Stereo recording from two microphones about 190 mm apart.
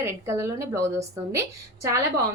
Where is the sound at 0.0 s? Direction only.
15° right (ahead or behind).